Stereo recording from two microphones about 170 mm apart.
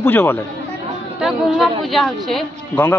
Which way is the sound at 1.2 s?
Centre (ahead or behind).